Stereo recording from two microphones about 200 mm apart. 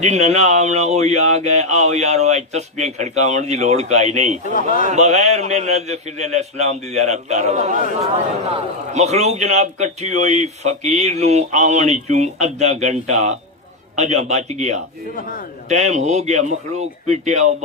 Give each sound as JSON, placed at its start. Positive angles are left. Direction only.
{"t": 0.0, "sound": "speech", "side_deg": -35}
{"t": 8.9, "sound": "speech", "side_deg": -35}
{"t": 15.1, "sound": "a man's voice", "side_deg": 45}
{"t": 15.7, "sound": "speech", "side_deg": -35}